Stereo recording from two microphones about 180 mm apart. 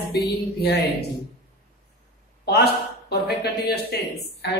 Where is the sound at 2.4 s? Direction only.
60° left (ahead or behind).